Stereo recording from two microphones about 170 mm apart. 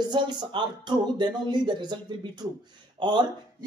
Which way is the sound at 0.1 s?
25° right (ahead or behind).